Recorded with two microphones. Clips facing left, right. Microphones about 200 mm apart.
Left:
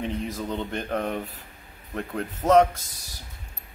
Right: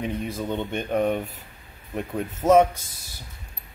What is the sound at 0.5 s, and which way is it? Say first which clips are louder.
Speech: right 4 dB; centre (ahead or behind).